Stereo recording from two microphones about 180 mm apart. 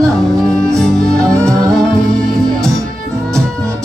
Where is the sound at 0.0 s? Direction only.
5° left (ahead or behind).